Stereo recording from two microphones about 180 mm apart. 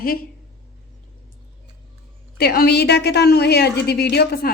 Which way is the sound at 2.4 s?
60° left (ahead or behind).